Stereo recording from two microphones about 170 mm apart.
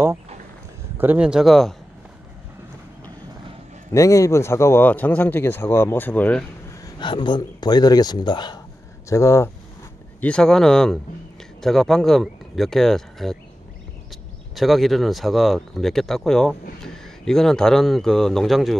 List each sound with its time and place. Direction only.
0.9 s speech: 10° right (ahead or behind)
3.9 s a man's voice: 20° left (ahead or behind)
7.0 s a man's voice: 25° left (ahead or behind)
10.2 s speech: 5° left (ahead or behind)
14.5 s speech: centre (ahead or behind)